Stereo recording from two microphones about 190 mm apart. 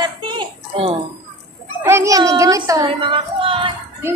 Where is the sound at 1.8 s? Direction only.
15° right (ahead or behind).